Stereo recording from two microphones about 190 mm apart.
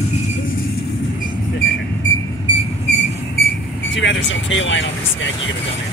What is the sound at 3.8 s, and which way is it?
Speech, 75° left (ahead or behind).